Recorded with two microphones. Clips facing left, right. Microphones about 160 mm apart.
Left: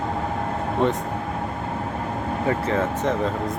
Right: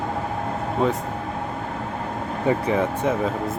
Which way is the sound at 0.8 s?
Centre (ahead or behind).